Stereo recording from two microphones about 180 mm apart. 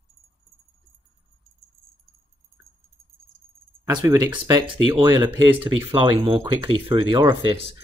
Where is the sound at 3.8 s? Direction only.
15° right (ahead or behind).